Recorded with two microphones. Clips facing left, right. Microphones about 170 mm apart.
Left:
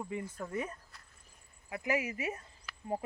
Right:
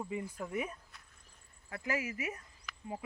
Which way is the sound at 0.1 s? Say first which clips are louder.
Even; 15° right (ahead or behind).